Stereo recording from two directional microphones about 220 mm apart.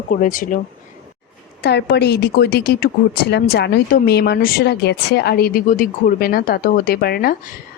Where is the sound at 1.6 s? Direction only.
50° left (ahead or behind).